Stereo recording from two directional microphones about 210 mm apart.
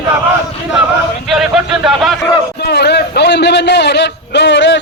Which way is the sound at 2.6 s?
50° left (ahead or behind).